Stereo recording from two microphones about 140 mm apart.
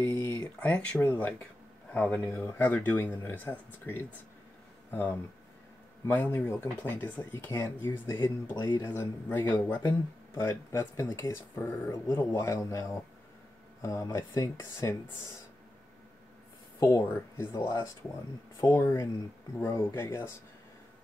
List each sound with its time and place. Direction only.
0.0 s a sound: 25° left (ahead or behind)
0.4 s speech: 10° left (ahead or behind)
8.5 s speech: 30° left (ahead or behind)
8.9 s speech: 15° left (ahead or behind)
9.8 s speech: 25° left (ahead or behind)
16.8 s speech: 20° left (ahead or behind)